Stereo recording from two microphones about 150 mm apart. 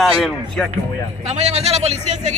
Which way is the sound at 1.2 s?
45° right (ahead or behind).